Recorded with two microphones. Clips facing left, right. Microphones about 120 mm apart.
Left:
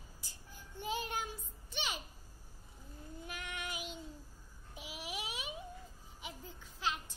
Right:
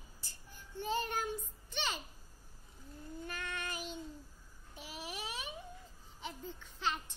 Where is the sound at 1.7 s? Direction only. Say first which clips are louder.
Right 2 dB; 10° left (ahead or behind).